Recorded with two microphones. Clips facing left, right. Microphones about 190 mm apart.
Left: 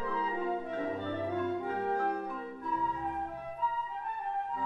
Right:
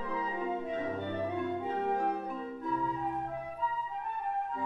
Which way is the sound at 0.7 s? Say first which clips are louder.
Even; 15° right (ahead or behind).